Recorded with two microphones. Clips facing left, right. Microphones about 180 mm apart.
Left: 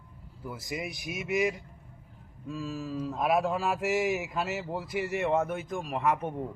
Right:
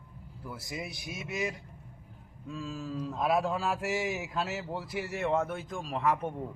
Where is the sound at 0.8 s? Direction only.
60° left (ahead or behind).